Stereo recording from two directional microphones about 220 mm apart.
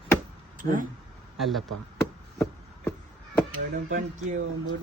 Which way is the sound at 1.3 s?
Centre (ahead or behind).